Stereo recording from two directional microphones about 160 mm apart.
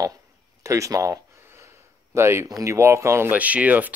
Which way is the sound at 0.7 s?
20° right (ahead or behind).